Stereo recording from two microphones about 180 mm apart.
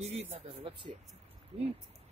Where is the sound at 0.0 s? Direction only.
35° right (ahead or behind).